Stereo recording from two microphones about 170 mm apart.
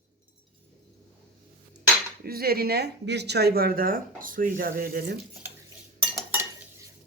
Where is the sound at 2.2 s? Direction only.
65° right (ahead or behind).